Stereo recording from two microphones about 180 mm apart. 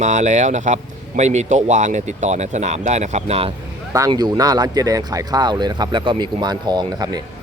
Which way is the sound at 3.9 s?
20° right (ahead or behind).